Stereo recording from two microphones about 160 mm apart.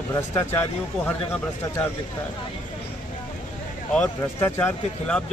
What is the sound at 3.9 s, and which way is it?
Speech, 10° left (ahead or behind).